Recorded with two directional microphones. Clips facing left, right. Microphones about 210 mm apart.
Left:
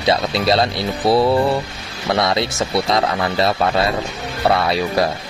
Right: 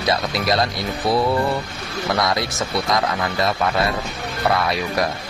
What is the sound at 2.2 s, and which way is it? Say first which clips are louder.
Speech: left 5 dB; 25° left (ahead or behind).